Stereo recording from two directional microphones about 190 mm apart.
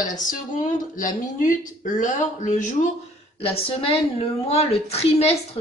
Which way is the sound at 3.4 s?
30° left (ahead or behind).